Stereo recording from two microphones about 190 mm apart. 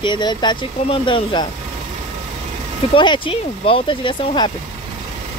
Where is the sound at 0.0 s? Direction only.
25° left (ahead or behind).